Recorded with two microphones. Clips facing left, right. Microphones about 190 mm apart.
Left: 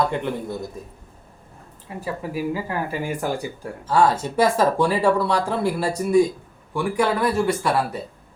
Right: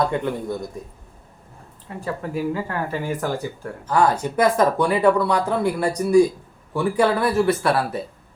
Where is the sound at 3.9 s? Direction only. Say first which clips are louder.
Even; 25° left (ahead or behind).